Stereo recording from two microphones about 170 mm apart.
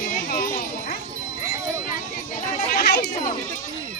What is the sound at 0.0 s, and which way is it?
Children playing, 60° left (ahead or behind).